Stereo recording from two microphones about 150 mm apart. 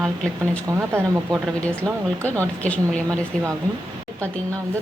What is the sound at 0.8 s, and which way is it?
Speech, 15° right (ahead or behind).